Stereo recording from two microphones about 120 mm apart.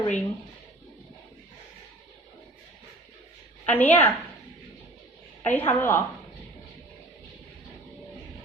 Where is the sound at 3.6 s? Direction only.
15° left (ahead or behind).